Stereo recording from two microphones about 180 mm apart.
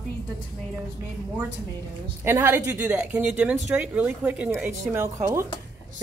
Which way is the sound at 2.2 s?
15° right (ahead or behind).